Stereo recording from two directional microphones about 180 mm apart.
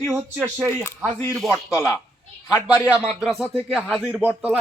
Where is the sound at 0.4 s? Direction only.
15° right (ahead or behind).